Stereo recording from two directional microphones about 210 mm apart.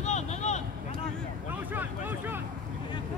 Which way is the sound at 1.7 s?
10° right (ahead or behind).